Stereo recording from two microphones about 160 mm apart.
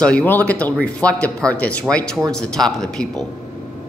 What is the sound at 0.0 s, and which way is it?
Speech, 10° left (ahead or behind).